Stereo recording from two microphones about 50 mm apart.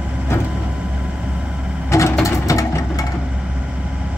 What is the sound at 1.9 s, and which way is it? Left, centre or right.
Vehicle, left.